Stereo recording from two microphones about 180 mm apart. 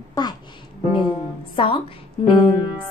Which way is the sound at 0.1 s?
20° left (ahead or behind).